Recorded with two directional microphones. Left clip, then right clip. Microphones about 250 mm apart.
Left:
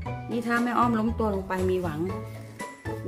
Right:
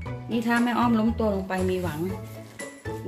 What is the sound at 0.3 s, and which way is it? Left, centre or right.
Speech, centre.